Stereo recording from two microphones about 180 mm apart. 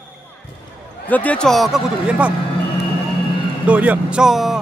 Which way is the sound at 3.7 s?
5° right (ahead or behind).